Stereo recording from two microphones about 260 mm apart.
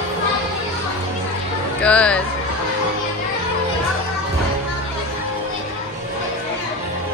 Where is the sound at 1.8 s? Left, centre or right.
Centre.